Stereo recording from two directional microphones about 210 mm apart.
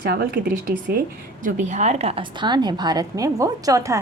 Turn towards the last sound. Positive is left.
turn(degrees=-15)  # may be behind; listen again after turning